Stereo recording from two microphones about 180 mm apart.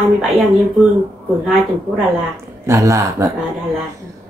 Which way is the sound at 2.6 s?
15° right (ahead or behind).